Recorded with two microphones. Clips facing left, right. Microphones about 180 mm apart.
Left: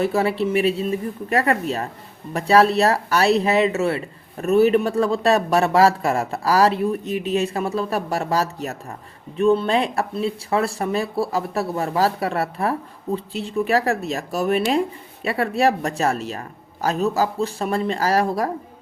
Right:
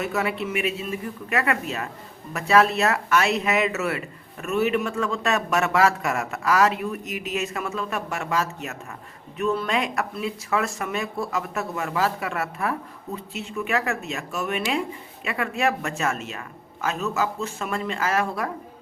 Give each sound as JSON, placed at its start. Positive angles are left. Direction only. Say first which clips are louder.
{"t": 0.0, "sound": "speech", "louder": "left 6 dB", "side_deg": 30}